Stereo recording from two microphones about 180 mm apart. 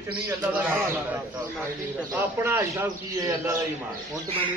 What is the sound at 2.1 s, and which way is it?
A man's voice, 15° right (ahead or behind).